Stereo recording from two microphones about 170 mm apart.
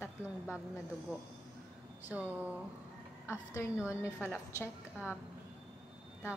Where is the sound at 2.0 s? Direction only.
10° right (ahead or behind).